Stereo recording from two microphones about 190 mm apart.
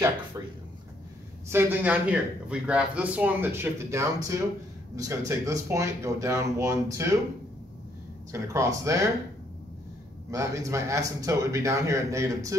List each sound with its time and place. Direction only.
1.5 s speech: 10° right (ahead or behind)
8.3 s speech: 15° right (ahead or behind)
10.3 s speech: 15° right (ahead or behind)